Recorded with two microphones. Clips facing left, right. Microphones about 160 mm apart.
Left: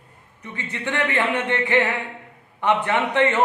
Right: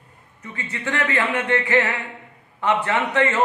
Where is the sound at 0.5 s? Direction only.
20° left (ahead or behind).